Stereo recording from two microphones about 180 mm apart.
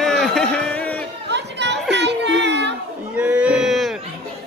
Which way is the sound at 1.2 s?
75° right (ahead or behind).